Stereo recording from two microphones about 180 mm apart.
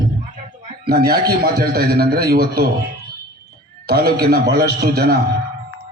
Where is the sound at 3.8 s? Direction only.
60° right (ahead or behind).